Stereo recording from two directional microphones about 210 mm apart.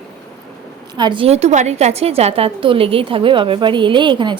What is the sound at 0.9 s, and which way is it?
A woman's voice, 20° right (ahead or behind).